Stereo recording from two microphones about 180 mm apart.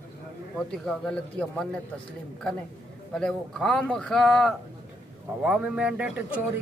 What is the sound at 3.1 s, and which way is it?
Speech, 5° left (ahead or behind).